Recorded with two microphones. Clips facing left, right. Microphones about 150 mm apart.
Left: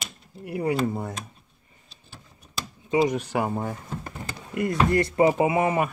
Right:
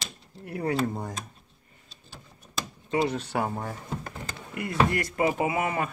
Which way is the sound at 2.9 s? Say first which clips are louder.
Left 4 dB; 15° left (ahead or behind).